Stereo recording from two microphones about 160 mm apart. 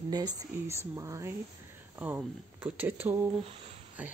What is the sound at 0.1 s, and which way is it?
Speech, 25° right (ahead or behind).